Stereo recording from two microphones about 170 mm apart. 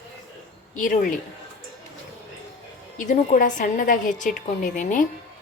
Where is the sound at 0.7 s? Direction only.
50° left (ahead or behind).